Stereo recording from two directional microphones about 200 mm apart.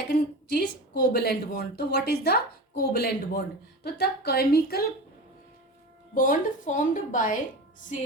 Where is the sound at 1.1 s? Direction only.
50° left (ahead or behind).